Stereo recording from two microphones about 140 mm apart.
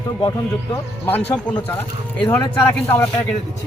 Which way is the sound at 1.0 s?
10° left (ahead or behind).